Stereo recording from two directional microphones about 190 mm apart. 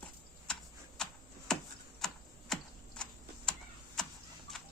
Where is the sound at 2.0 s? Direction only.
5° left (ahead or behind).